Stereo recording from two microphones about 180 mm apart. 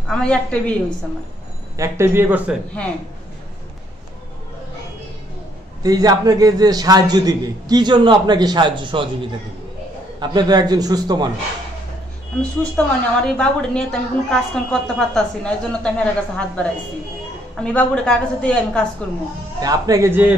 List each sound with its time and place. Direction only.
0.1 s a woman's voice: 5° left (ahead or behind)
1.8 s speech: 15° right (ahead or behind)
5.8 s a man's voice: 20° right (ahead or behind)
10.2 s a man's voice: 25° right (ahead or behind)
12.4 s a woman's voice: 5° left (ahead or behind)
19.6 s speech: 20° right (ahead or behind)